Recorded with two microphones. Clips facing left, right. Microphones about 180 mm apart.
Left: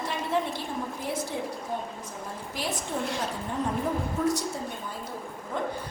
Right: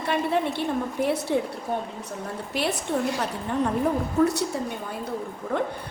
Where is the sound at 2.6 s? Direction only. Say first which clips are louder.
Right 7 dB; 70° right (ahead or behind).